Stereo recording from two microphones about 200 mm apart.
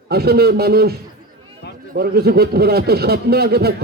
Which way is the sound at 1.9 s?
50° right (ahead or behind).